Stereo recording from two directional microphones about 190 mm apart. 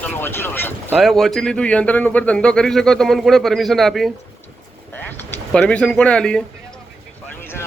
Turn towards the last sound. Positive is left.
turn(degrees=5)  # may be behind; listen again after turning